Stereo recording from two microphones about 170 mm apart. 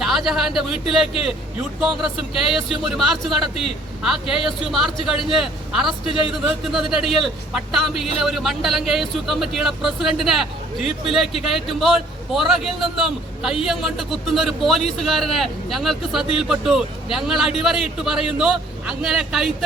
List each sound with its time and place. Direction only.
0.0 s a man's voice: centre (ahead or behind)